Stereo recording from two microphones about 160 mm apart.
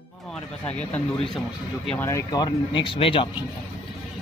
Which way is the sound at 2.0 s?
20° left (ahead or behind).